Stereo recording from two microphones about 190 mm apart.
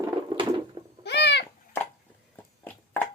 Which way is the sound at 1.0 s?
60° left (ahead or behind).